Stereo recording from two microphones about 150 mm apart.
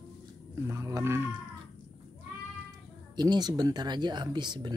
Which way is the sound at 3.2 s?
30° right (ahead or behind).